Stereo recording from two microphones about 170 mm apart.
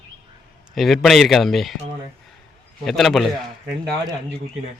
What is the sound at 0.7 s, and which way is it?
A man's voice, centre (ahead or behind).